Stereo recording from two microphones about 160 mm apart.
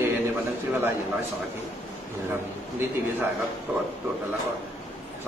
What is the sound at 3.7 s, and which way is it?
Speech, 10° right (ahead or behind).